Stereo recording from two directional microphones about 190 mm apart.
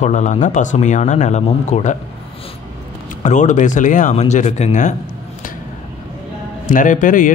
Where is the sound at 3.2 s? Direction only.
40° left (ahead or behind).